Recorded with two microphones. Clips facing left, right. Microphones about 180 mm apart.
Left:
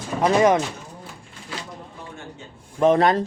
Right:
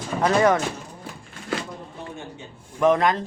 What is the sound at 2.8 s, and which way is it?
Speech, 30° left (ahead or behind).